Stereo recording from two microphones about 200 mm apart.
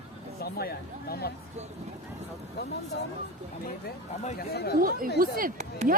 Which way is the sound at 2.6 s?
55° left (ahead or behind).